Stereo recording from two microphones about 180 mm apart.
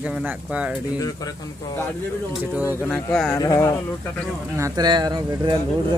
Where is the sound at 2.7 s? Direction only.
5° left (ahead or behind).